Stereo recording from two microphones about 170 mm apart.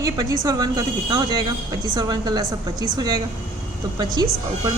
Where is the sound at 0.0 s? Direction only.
20° right (ahead or behind).